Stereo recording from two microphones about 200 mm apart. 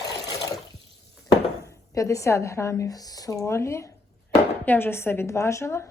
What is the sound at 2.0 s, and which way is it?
Speech, 15° left (ahead or behind).